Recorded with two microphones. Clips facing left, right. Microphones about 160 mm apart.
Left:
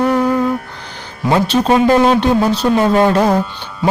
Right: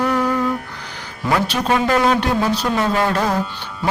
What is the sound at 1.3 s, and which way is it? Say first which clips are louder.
Speech: left 5 dB; 25° left (ahead or behind).